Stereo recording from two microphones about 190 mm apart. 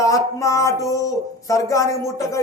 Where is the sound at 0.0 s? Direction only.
15° left (ahead or behind).